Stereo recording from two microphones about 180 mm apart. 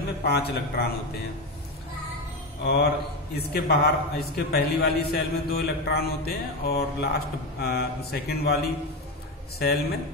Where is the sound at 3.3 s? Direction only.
60° left (ahead or behind).